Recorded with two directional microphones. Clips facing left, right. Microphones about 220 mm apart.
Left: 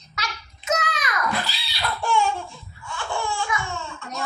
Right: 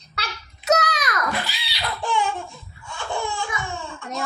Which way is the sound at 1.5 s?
15° right (ahead or behind).